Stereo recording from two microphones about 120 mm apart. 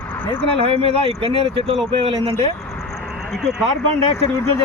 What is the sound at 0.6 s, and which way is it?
Speech, 50° right (ahead or behind).